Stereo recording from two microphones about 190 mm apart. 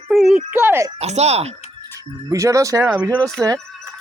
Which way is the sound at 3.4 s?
15° right (ahead or behind).